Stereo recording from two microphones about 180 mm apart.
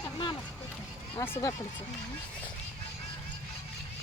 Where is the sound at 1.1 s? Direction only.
15° left (ahead or behind).